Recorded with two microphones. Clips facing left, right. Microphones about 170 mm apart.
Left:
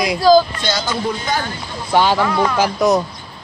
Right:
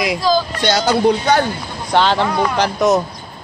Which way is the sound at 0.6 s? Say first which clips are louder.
Right 6 dB; 70° right (ahead or behind).